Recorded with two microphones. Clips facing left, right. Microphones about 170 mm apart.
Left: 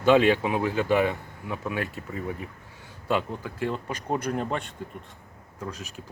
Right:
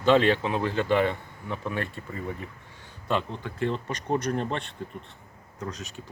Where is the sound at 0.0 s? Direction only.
10° left (ahead or behind).